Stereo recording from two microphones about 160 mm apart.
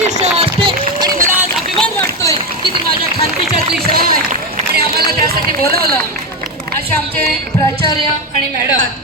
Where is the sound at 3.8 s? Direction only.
70° right (ahead or behind).